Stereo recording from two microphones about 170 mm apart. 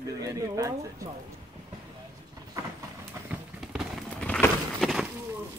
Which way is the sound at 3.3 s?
5° right (ahead or behind).